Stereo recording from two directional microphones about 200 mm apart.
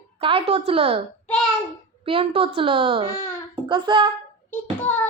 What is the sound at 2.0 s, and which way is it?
Speech, 25° right (ahead or behind).